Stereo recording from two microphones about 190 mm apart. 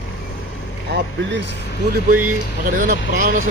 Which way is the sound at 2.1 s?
10° right (ahead or behind).